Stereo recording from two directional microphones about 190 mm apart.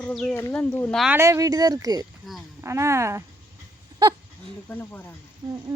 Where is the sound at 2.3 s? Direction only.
Centre (ahead or behind).